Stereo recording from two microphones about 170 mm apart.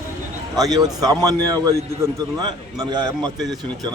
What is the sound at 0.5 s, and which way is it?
A man's voice, 20° right (ahead or behind).